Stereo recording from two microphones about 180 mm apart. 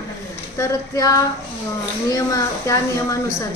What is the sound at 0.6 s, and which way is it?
Speech, 20° left (ahead or behind).